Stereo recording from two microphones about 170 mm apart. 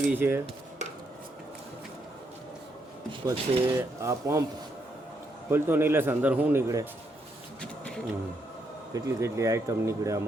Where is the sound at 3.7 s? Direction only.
15° right (ahead or behind).